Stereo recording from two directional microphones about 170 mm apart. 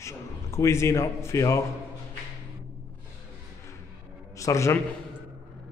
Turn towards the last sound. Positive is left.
turn(degrees=20)  # may be behind; listen again after turning